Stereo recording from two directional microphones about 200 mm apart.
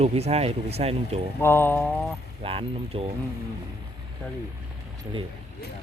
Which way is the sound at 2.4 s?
30° right (ahead or behind).